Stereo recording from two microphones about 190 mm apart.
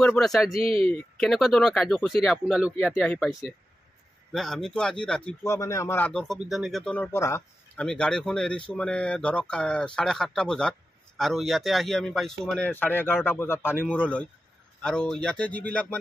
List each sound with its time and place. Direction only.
0.0 s speech: 5° left (ahead or behind)
0.6 s speech: 30° right (ahead or behind)
1.1 s speech: centre (ahead or behind)